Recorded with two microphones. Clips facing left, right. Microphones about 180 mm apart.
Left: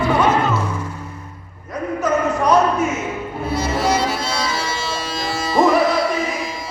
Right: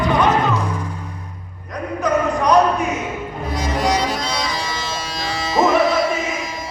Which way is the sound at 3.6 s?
15° right (ahead or behind).